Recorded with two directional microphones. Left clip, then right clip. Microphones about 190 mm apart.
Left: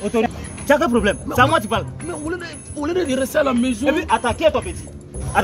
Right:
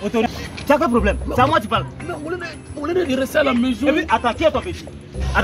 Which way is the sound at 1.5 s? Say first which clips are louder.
Right 1 dB; 50° left (ahead or behind).